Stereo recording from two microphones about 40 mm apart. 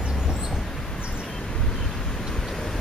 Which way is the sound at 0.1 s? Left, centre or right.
Centre.